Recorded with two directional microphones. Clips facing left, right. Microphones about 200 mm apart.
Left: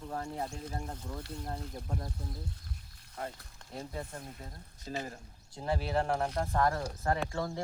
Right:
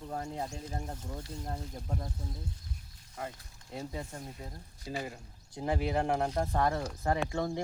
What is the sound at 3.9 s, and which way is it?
Speech, 15° right (ahead or behind).